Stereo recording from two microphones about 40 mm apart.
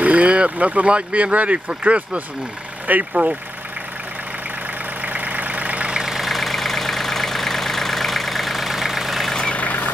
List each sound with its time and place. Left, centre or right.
0.0 s speech: right
3.1 s speech: right
5.0 s vehicle: right
5.9 s vehicle: centre
9.3 s vehicle: left
9.6 s vehicle: left